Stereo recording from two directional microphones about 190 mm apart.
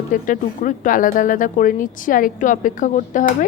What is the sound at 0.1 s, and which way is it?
A woman's voice, 45° left (ahead or behind).